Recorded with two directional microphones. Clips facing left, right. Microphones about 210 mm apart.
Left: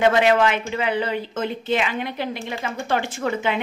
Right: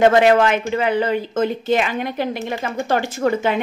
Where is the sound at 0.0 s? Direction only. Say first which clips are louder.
Right 4 dB; 45° right (ahead or behind).